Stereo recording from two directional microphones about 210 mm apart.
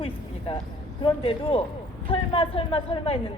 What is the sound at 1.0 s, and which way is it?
Speech, 25° left (ahead or behind).